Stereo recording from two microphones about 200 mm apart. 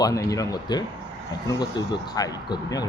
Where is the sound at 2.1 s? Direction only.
20° left (ahead or behind).